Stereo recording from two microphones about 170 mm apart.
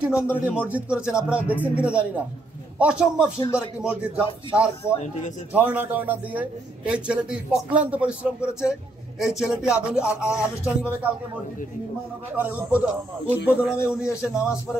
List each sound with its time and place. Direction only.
0.0 s a man's voice: 10° right (ahead or behind)
3.3 s speech: 20° left (ahead or behind)
3.8 s a man's voice: 10° right (ahead or behind)
5.5 s a man's voice: 10° right (ahead or behind)
12.4 s a man's voice: 10° right (ahead or behind)